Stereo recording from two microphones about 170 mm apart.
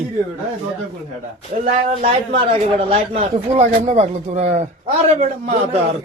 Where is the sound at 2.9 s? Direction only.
35° right (ahead or behind).